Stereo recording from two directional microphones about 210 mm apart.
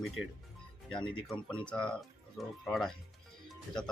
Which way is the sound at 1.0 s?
25° left (ahead or behind).